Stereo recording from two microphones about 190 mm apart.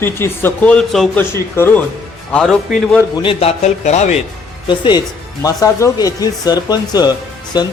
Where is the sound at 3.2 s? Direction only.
35° left (ahead or behind).